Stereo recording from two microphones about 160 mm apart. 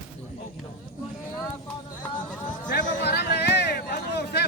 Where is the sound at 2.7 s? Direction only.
90° left.